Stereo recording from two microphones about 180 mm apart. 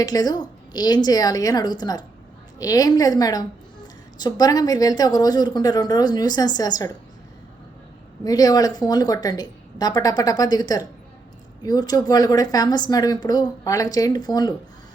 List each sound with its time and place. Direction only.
0.0 s speech: 20° left (ahead or behind)
8.2 s speech: 20° left (ahead or behind)